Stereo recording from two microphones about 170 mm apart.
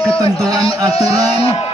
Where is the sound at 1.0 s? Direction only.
20° right (ahead or behind).